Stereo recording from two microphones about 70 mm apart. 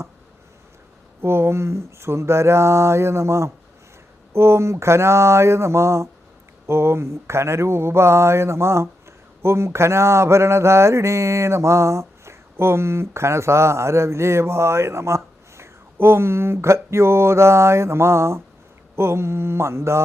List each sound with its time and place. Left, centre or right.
1.2 s mantra: right